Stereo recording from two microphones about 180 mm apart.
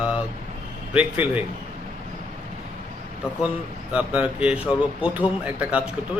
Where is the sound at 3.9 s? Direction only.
5° right (ahead or behind).